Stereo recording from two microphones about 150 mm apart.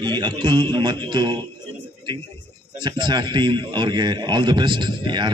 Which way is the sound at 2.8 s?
30° right (ahead or behind).